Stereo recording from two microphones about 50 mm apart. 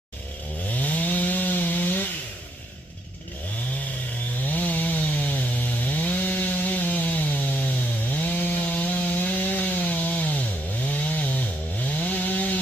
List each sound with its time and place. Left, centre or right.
0.7 s wood: left
4.5 s chainsaw: left